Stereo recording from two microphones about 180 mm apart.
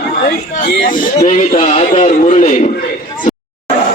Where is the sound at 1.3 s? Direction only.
40° left (ahead or behind).